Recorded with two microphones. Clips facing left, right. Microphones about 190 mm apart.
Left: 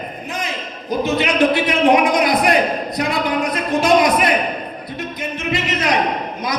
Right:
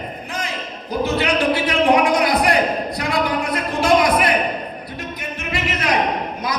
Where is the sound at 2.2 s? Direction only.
20° left (ahead or behind).